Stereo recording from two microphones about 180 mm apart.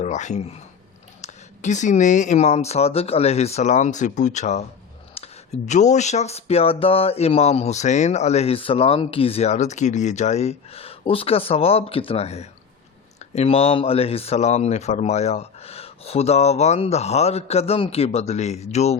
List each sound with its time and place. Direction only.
0.0 s speech: 40° left (ahead or behind)